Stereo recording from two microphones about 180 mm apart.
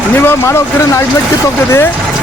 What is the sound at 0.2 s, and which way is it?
Speech, 15° left (ahead or behind).